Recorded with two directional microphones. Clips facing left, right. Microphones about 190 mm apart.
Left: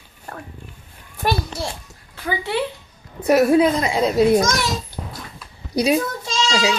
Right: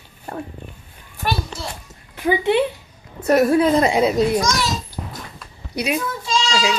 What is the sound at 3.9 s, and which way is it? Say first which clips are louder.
Speech: right 2 dB; 5° right (ahead or behind).